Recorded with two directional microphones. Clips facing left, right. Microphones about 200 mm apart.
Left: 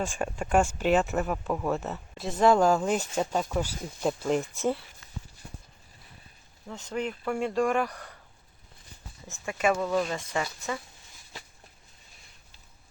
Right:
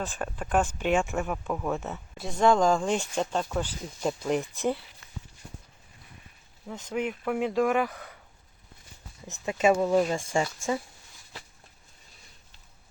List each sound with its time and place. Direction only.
0.0 s speech: 10° left (ahead or behind)
6.7 s speech: 5° right (ahead or behind)
9.2 s speech: 20° right (ahead or behind)